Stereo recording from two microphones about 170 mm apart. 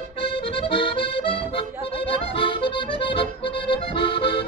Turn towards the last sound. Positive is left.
turn(degrees=30)  # may be behind; listen again after turning